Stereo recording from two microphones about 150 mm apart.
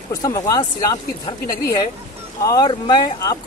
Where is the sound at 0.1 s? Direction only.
25° left (ahead or behind).